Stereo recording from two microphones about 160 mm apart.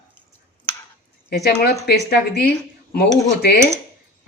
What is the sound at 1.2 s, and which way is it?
Speech, 85° left.